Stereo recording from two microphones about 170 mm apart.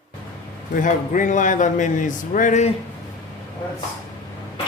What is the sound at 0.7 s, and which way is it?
A man's voice, 50° left (ahead or behind).